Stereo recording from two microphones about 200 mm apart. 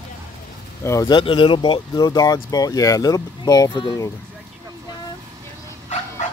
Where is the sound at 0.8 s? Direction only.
20° left (ahead or behind).